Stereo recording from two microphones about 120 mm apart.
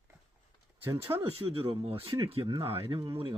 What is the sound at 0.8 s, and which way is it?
Speech, 20° right (ahead or behind).